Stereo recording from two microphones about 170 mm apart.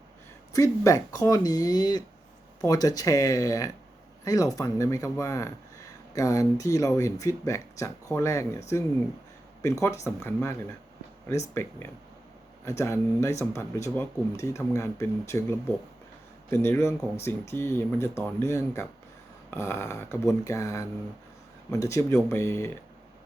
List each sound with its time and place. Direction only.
0.5 s speech: 20° left (ahead or behind)